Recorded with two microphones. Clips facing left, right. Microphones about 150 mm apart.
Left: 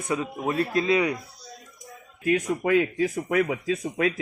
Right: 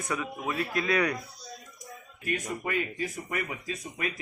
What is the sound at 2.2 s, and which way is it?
Speech, 90° left.